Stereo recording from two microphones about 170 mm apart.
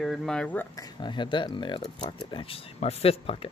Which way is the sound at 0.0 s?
Centre (ahead or behind).